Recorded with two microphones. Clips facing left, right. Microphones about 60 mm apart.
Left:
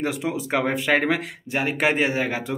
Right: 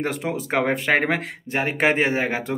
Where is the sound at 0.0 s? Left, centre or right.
Right.